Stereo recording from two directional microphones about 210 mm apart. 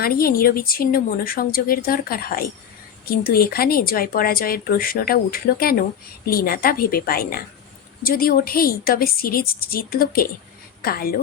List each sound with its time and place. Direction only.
0.0 s speech: 45° left (ahead or behind)